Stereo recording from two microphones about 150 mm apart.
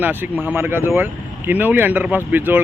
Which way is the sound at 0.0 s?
10° right (ahead or behind).